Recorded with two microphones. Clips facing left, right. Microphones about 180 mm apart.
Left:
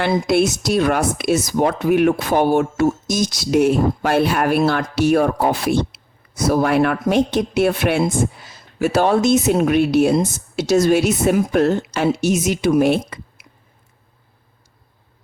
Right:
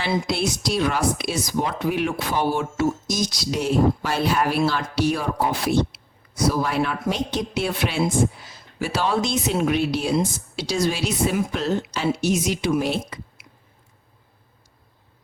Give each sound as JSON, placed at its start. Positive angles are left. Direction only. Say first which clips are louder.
{"t": 0.1, "sound": "speech", "louder": "left 4 dB", "side_deg": 40}